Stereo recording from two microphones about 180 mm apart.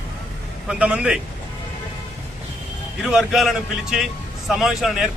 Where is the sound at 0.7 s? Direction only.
5° right (ahead or behind).